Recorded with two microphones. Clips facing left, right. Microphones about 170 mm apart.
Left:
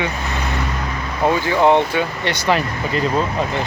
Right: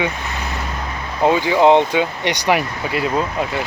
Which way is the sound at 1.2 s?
15° right (ahead or behind).